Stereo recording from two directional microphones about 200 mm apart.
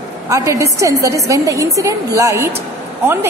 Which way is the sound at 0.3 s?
15° right (ahead or behind).